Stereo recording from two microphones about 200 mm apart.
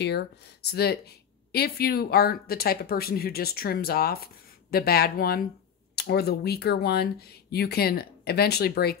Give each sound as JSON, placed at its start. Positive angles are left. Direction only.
{"t": 0.0, "sound": "speech", "side_deg": 55}